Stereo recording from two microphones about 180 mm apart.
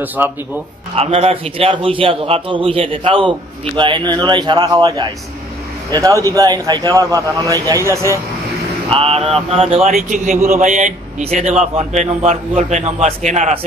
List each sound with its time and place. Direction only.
0.2 s speech: 10° right (ahead or behind)
0.9 s a man's voice: 35° right (ahead or behind); by 8.2 s 15° right (ahead or behind)
8.8 s speech: 30° right (ahead or behind)